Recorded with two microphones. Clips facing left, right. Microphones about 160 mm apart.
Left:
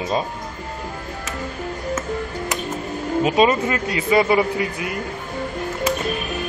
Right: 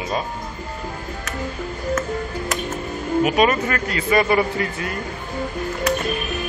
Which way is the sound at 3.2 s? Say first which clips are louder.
Left 2 dB; 20° left (ahead or behind).